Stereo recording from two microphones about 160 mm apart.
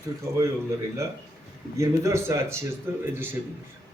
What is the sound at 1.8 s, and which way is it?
Speech, 20° right (ahead or behind).